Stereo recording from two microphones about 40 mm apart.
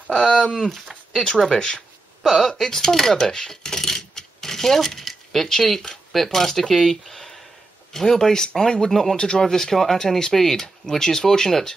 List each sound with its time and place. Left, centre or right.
0.1 s speech: centre
1.1 s speech: centre
2.2 s speech: centre